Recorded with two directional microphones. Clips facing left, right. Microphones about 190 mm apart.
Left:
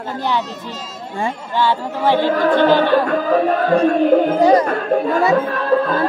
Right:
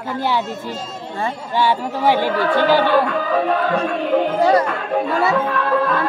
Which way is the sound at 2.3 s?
50° left (ahead or behind).